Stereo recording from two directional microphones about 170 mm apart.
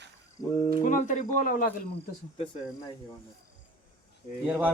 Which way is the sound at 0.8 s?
50° left (ahead or behind).